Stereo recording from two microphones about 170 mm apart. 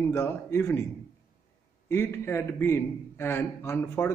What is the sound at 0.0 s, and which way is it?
Speech, 15° left (ahead or behind).